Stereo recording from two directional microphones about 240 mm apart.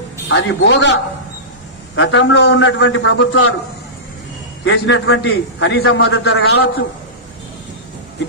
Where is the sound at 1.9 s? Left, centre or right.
Left.